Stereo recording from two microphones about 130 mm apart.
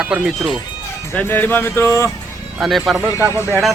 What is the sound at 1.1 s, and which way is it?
Speech, 15° left (ahead or behind).